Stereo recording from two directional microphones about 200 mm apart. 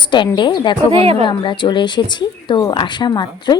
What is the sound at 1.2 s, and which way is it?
Speech, 25° left (ahead or behind).